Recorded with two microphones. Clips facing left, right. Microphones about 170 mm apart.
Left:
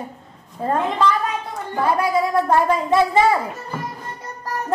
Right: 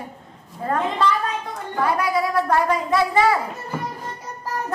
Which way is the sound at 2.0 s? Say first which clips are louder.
Left 2 dB; 25° left (ahead or behind).